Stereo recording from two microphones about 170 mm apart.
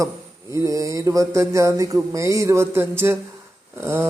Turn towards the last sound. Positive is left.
turn(degrees=-15)  # may be behind; listen again after turning